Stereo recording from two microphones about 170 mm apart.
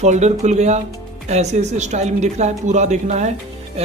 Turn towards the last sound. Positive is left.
turn(degrees=-45)  # may be behind; listen again after turning